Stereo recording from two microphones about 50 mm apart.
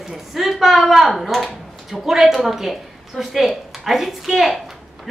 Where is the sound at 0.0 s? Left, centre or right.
Centre.